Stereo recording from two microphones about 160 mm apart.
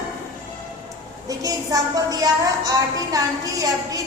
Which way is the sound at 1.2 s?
20° right (ahead or behind).